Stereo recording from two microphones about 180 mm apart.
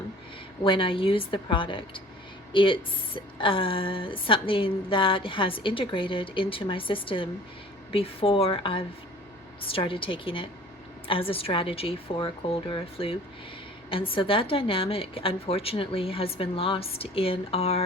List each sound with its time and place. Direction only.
0.6 s a woman's voice: 30° left (ahead or behind)